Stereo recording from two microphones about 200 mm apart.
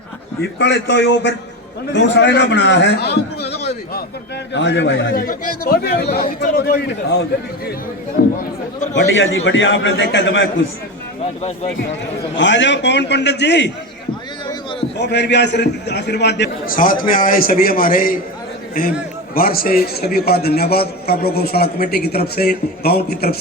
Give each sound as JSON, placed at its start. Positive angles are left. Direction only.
{"t": 0.6, "sound": "a man's voice", "side_deg": 60}
{"t": 3.5, "sound": "a sound", "side_deg": 55}
{"t": 4.5, "sound": "a man's voice", "side_deg": 60}
{"t": 8.2, "sound": "a man's voice", "side_deg": 55}
{"t": 9.0, "sound": "a man's voice", "side_deg": 70}
{"t": 12.4, "sound": "a man's voice", "side_deg": 65}
{"t": 14.9, "sound": "a man's voice", "side_deg": 60}